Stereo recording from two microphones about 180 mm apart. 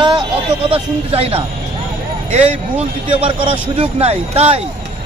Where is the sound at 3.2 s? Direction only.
30° right (ahead or behind).